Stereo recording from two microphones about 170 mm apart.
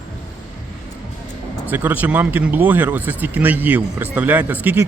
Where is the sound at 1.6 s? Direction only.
10° right (ahead or behind).